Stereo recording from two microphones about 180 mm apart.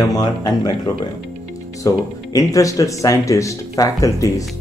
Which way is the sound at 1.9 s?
20° left (ahead or behind).